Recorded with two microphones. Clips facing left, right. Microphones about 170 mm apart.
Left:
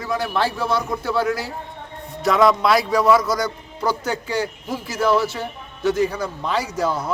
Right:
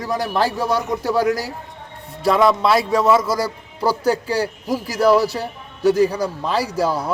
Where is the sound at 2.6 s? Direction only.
25° right (ahead or behind).